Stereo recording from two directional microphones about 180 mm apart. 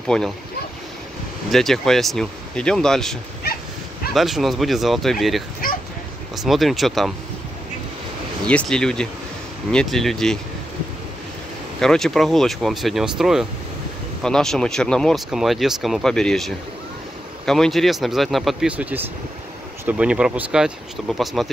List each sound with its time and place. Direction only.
0.1 s speech: 5° left (ahead or behind)
1.5 s speech: centre (ahead or behind)
5.6 s bow-wow: 50° left (ahead or behind)
6.3 s speech: centre (ahead or behind)
8.5 s speech: 5° left (ahead or behind)
11.8 s speech: centre (ahead or behind)